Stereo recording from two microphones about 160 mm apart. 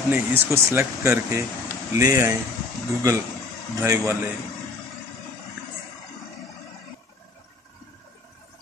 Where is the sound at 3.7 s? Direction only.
20° right (ahead or behind).